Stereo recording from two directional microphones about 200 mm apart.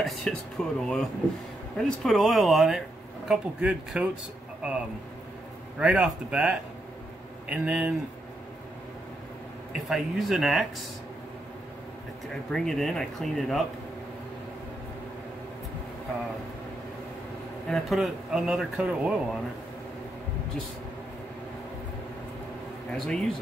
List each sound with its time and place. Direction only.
0.0 s a man's voice: centre (ahead or behind)
9.7 s a man's voice: centre (ahead or behind)
12.5 s a man's voice: centre (ahead or behind)
17.6 s a man's voice: centre (ahead or behind)
22.9 s a man's voice: centre (ahead or behind)